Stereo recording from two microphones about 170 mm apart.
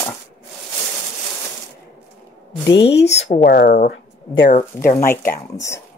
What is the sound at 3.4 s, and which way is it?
Speech, 70° left (ahead or behind).